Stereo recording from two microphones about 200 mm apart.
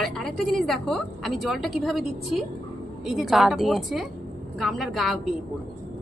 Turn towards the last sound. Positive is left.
turn(degrees=0)  # may be behind; listen again after turning